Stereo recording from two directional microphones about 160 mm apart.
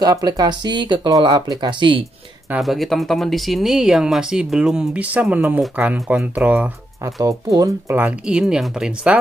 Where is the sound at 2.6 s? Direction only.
Centre (ahead or behind).